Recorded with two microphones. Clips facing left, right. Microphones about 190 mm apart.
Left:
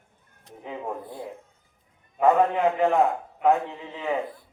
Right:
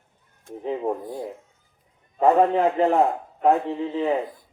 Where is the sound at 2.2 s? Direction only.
35° right (ahead or behind).